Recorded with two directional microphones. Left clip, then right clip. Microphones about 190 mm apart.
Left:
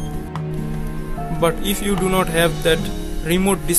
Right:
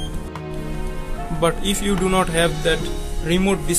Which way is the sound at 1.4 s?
15° left (ahead or behind).